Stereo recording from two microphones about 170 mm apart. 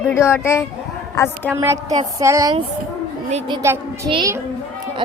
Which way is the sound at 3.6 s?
15° right (ahead or behind).